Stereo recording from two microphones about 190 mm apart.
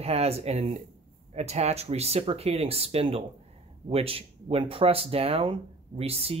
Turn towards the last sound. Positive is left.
turn(degrees=-30)  # may be behind; listen again after turning